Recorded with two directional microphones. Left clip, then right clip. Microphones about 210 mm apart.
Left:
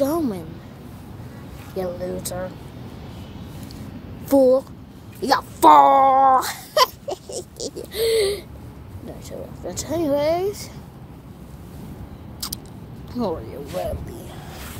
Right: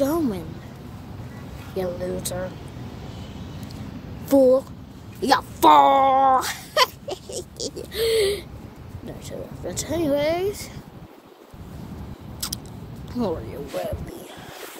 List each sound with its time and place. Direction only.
0.0 s a sound: 5° left (ahead or behind)
1.8 s speech: centre (ahead or behind)
4.3 s speech: 10° left (ahead or behind)
5.2 s a woman's voice: 25° right (ahead or behind)
5.6 s speech: 10° left (ahead or behind)
6.0 s cat: 15° right (ahead or behind)
6.4 s speech: 5° left (ahead or behind)
9.7 s speech: 5° left (ahead or behind)
13.1 s speech: centre (ahead or behind)